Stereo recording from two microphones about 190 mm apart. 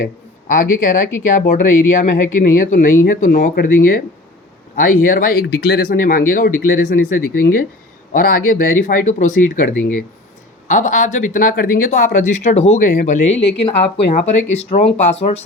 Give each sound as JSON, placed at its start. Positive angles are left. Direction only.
{"t": 0.0, "sound": "speech", "side_deg": 45}
{"t": 13.7, "sound": "speech", "side_deg": 35}